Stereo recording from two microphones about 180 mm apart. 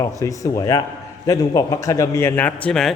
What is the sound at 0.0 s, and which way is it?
A man's voice, 20° left (ahead or behind).